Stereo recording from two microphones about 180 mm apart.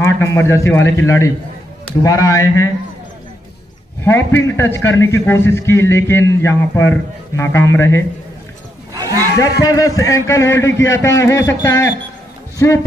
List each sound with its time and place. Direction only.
0.0 s a man's voice: 15° left (ahead or behind)
4.0 s a man's voice: 10° left (ahead or behind)
8.9 s a sound: 20° right (ahead or behind)
9.6 s a man's voice: 20° left (ahead or behind)